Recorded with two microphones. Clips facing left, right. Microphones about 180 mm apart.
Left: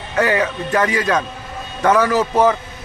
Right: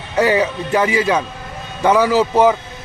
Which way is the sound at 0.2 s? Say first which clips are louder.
Right 2 dB; 10° right (ahead or behind).